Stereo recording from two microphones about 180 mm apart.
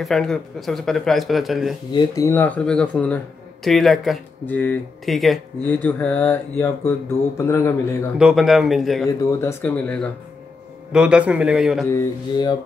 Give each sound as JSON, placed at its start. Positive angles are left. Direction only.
{"t": 0.0, "sound": "speech", "side_deg": 0}
{"t": 1.9, "sound": "speech", "side_deg": 20}
{"t": 8.2, "sound": "speech", "side_deg": 0}
{"t": 9.0, "sound": "speech", "side_deg": 15}
{"t": 10.9, "sound": "speech", "side_deg": -5}
{"t": 11.9, "sound": "mantra", "side_deg": 25}